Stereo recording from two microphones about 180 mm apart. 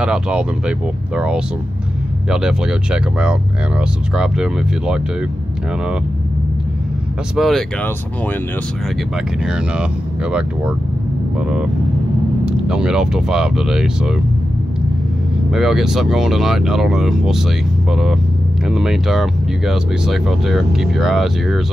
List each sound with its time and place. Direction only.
0.0 s speech: 5° right (ahead or behind)
7.3 s speech: centre (ahead or behind)
11.4 s speech: 5° right (ahead or behind)
15.5 s speech: centre (ahead or behind)
18.7 s speech: centre (ahead or behind)